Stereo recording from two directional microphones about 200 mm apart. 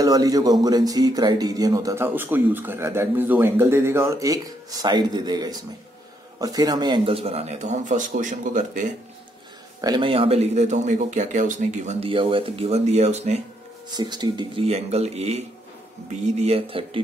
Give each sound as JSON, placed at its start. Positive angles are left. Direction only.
{"t": 0.0, "sound": "speech", "side_deg": -20}
{"t": 9.8, "sound": "speech", "side_deg": -20}
{"t": 13.8, "sound": "speech", "side_deg": -20}